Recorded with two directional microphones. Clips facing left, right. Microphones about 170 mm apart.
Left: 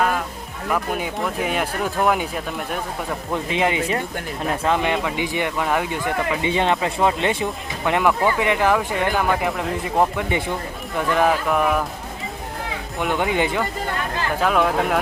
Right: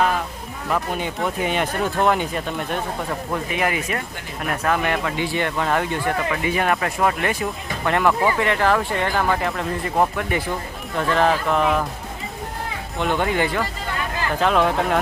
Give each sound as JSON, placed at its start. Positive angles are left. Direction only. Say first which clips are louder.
{"t": 0.7, "sound": "speech", "louder": "even", "side_deg": 5}
{"t": 3.5, "sound": "speech", "louder": "left 4 dB", "side_deg": 25}
{"t": 6.4, "sound": "speech", "louder": "left 2 dB", "side_deg": 25}
{"t": 13.1, "sound": "speech", "louder": "left 1 dB", "side_deg": 15}
{"t": 14.4, "sound": "speech", "louder": "right 1 dB", "side_deg": 5}